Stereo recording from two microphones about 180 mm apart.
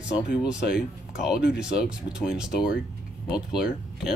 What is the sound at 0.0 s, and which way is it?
Speech, 5° right (ahead or behind).